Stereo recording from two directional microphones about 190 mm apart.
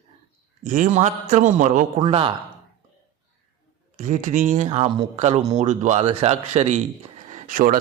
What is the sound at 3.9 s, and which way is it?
A man's voice, 40° right (ahead or behind).